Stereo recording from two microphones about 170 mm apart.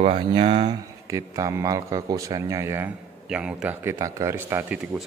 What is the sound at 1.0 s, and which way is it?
Speech, 20° right (ahead or behind).